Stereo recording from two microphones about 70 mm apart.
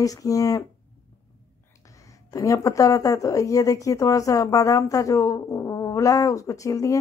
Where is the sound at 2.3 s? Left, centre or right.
Left.